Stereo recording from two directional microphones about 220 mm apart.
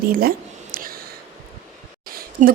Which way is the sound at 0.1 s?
40° right (ahead or behind).